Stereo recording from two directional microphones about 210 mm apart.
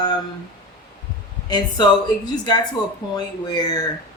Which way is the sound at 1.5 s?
20° left (ahead or behind).